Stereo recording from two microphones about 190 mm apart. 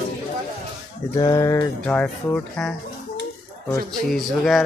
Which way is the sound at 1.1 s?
20° left (ahead or behind).